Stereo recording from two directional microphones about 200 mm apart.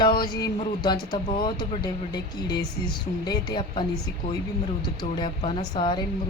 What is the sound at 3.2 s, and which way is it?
Speech, 20° left (ahead or behind).